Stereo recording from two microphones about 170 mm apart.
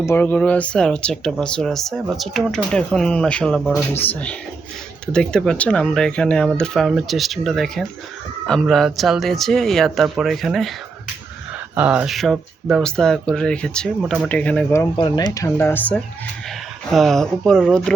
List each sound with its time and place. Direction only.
0.0 s speech: 10° left (ahead or behind)
3.9 s speech: 10° left (ahead or behind)
11.7 s speech: 10° right (ahead or behind); by 14.8 s 10° left (ahead or behind)
14.9 s speech: 25° left (ahead or behind)
15.4 s speech: 15° left (ahead or behind)